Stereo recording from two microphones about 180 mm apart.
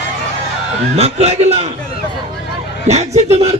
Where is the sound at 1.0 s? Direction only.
35° right (ahead or behind).